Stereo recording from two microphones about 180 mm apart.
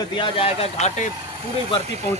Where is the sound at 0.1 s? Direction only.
30° left (ahead or behind).